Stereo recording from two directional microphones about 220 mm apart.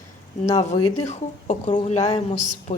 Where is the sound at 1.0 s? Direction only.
30° left (ahead or behind).